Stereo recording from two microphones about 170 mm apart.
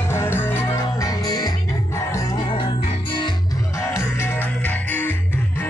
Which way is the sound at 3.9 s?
15° left (ahead or behind).